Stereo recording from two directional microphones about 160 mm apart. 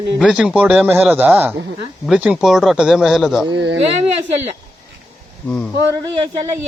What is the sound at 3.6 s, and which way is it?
Speech, 90° right.